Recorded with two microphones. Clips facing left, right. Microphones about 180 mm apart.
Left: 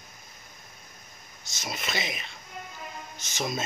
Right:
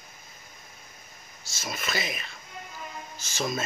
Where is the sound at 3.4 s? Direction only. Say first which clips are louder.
Right 1 dB; 20° left (ahead or behind).